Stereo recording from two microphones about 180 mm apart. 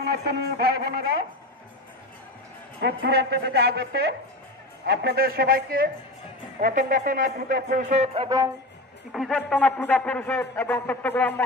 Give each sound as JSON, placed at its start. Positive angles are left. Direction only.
{"t": 0.0, "sound": "a woman's voice", "side_deg": -60}
{"t": 2.8, "sound": "a woman's voice", "side_deg": -60}
{"t": 9.1, "sound": "a man's voice", "side_deg": 5}